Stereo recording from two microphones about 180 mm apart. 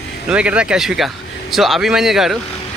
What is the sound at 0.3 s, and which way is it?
A man's voice, 5° right (ahead or behind).